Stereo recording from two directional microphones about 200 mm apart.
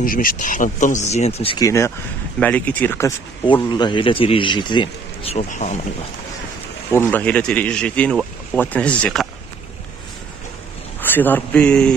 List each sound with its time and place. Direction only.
0.0 s speech: 45° left (ahead or behind); by 1.7 s 25° left (ahead or behind)
2.4 s speech: 10° left (ahead or behind)
3.6 s speech: 20° left (ahead or behind)
6.9 s speech: 10° left (ahead or behind)
11.0 s speech: 10° left (ahead or behind)